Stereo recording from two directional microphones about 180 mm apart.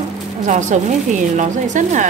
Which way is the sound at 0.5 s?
40° right (ahead or behind).